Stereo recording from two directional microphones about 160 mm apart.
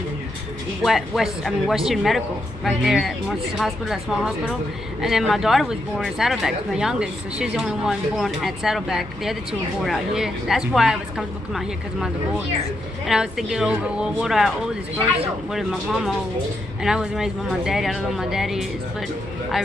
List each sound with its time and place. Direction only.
0.8 s speech: centre (ahead or behind)
15.5 s speech: centre (ahead or behind)